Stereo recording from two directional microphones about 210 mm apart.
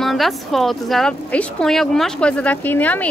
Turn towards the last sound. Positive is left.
turn(degrees=10)  # may be behind; listen again after turning